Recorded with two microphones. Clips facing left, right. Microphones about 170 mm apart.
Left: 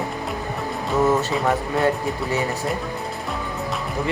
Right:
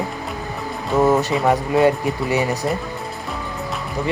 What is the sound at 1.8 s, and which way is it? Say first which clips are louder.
Speech: right 5 dB; 10° right (ahead or behind).